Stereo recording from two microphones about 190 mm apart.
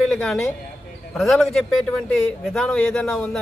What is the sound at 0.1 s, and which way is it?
A man's voice, 5° left (ahead or behind).